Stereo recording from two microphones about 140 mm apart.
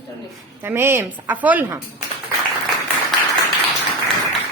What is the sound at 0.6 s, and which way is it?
A woman's voice, 15° right (ahead or behind).